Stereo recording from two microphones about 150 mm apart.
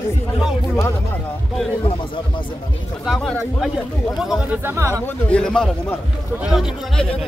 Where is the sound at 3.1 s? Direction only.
Centre (ahead or behind).